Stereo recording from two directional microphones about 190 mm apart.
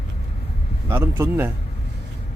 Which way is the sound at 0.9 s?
15° right (ahead or behind).